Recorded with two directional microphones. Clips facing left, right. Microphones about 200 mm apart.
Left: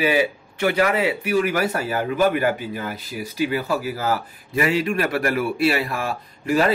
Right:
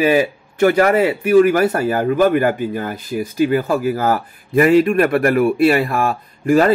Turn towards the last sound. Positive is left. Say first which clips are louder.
# right 6 dB
turn(degrees=-50)  # may be behind; listen again after turning